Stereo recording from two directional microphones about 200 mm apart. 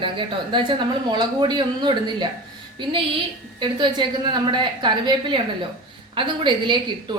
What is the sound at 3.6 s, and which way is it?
A woman's voice, 25° right (ahead or behind).